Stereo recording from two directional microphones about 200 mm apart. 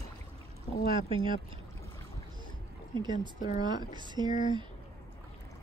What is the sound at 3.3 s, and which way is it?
Speech, 35° left (ahead or behind).